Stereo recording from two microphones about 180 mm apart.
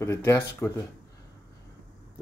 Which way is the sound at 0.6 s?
Centre (ahead or behind).